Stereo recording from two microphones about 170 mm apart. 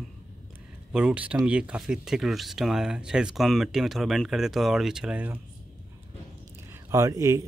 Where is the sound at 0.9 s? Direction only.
5° right (ahead or behind).